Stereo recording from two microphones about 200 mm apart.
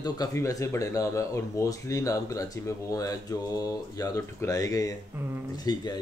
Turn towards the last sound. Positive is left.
turn(degrees=20)  # may be behind; listen again after turning